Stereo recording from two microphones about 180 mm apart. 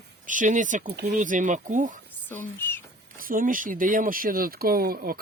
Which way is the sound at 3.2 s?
50° right (ahead or behind).